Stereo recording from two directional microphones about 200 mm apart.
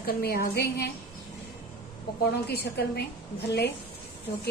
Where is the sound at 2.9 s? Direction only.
55° left (ahead or behind).